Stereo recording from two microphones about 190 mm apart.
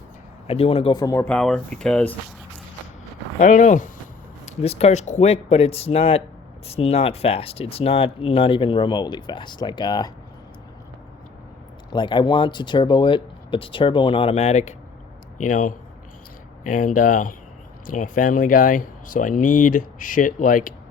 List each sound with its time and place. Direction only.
0.4 s speech: 30° left (ahead or behind)
1.3 s speech: 5° left (ahead or behind)
3.4 s speech: 40° left (ahead or behind); by 10.1 s 20° left (ahead or behind)
11.9 s speech: 25° left (ahead or behind); by 20.7 s 45° left (ahead or behind)